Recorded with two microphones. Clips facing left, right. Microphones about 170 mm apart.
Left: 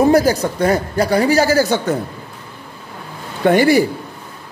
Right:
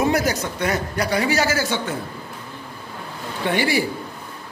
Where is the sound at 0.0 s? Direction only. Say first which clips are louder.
Left 8 dB; 35° left (ahead or behind).